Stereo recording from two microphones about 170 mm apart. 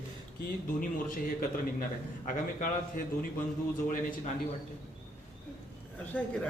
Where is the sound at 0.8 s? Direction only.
55° left (ahead or behind).